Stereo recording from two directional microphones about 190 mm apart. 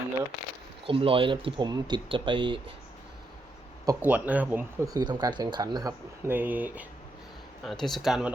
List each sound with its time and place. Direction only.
0.9 s speech: 30° right (ahead or behind)
3.8 s speech: 10° right (ahead or behind)